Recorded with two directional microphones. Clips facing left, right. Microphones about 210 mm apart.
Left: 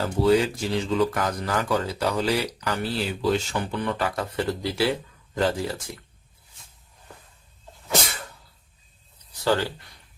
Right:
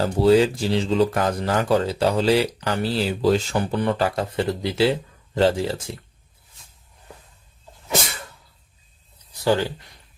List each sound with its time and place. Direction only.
0.0 s speech: 30° right (ahead or behind)
9.4 s speech: 15° right (ahead or behind)